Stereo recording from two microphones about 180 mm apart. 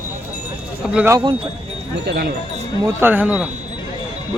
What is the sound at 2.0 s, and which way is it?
Wind chime, 65° right (ahead or behind).